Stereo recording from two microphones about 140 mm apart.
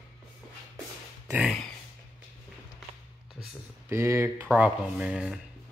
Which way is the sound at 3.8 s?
20° right (ahead or behind).